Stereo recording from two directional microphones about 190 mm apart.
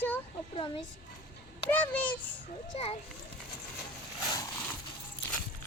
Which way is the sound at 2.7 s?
30° left (ahead or behind).